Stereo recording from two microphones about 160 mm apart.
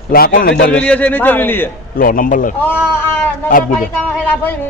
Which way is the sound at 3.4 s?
60° left (ahead or behind).